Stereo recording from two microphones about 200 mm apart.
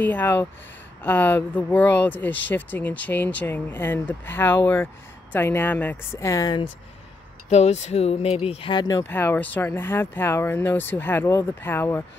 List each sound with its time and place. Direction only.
0.0 s speech: 10° left (ahead or behind)
7.4 s speech: 35° left (ahead or behind); by 12.0 s 10° left (ahead or behind)